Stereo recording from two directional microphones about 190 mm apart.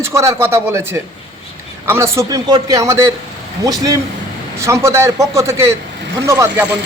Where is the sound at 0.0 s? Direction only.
15° right (ahead or behind).